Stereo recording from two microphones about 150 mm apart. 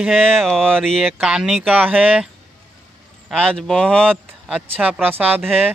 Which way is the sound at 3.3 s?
5° left (ahead or behind).